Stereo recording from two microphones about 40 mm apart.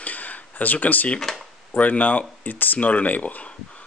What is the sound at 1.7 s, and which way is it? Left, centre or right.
Speech, left.